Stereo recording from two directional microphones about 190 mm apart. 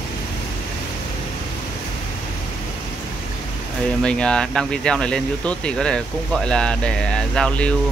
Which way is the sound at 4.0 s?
5° left (ahead or behind).